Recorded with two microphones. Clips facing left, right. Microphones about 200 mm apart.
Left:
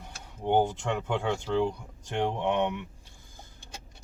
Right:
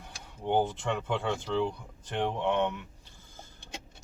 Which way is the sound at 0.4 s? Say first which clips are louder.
Left 2 dB; 10° left (ahead or behind).